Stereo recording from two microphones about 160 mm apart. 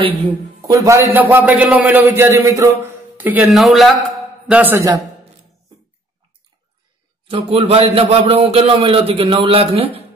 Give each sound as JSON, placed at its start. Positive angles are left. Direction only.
{"t": 0.7, "sound": "a man's voice", "side_deg": -20}
{"t": 7.2, "sound": "a man's voice", "side_deg": -35}